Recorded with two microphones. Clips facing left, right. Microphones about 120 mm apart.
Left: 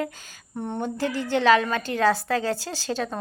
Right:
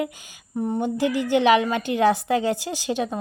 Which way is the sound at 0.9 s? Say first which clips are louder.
Right 4 dB; 15° right (ahead or behind).